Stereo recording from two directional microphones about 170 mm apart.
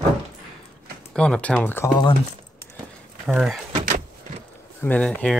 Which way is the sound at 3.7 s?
45° right (ahead or behind).